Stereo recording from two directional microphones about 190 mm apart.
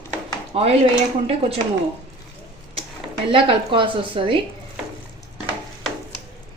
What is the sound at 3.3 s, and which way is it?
A woman's voice, 25° right (ahead or behind).